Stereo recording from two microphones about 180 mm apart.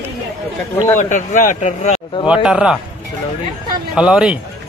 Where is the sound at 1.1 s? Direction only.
45° left (ahead or behind).